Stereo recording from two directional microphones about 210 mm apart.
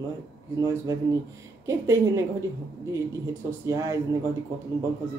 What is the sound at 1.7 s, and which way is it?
Speech, 15° right (ahead or behind).